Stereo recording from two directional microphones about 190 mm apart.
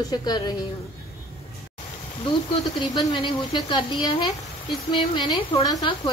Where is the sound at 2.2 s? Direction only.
25° left (ahead or behind).